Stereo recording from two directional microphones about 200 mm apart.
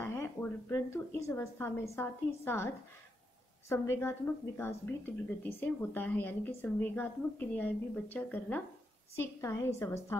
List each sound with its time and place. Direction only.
0.0 s a woman's voice: 10° left (ahead or behind)